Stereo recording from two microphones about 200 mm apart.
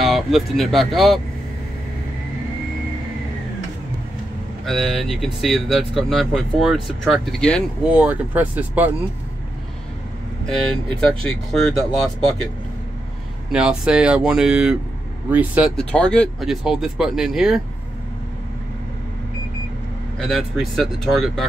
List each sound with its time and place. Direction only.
0.0 s speech: centre (ahead or behind)
4.6 s speech: centre (ahead or behind)
7.9 s speech: 5° right (ahead or behind)
11.2 s speech: 5° left (ahead or behind)
13.5 s speech: 5° right (ahead or behind)
15.7 s speech: 5° left (ahead or behind)
20.2 s speech: centre (ahead or behind)